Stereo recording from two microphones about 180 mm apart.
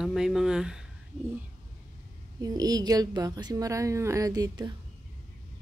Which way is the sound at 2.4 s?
20° right (ahead or behind).